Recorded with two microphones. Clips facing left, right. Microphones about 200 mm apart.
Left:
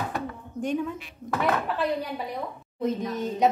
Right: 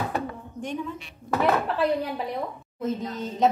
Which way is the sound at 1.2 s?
20° left (ahead or behind).